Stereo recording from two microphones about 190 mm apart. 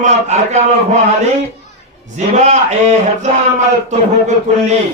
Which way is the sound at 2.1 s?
35° right (ahead or behind).